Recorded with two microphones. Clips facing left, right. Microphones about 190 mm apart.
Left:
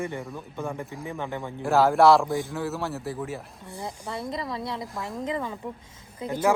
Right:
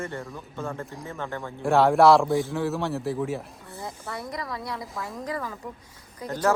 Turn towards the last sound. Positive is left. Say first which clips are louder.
# left 1 dB
turn(degrees=10)  # may be behind; listen again after turning